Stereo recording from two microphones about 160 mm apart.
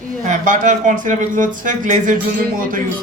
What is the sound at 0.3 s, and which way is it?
Speech, 55° right (ahead or behind).